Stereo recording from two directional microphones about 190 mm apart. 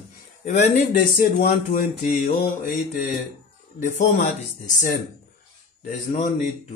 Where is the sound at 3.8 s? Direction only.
40° left (ahead or behind).